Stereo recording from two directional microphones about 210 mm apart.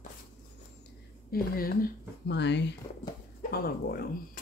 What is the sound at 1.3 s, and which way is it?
A woman's voice, 45° left (ahead or behind).